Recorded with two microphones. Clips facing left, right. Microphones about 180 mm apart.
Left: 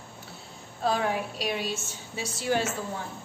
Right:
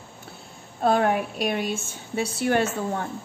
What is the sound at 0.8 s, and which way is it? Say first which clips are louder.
A woman's voice: right 6 dB; 55° right (ahead or behind).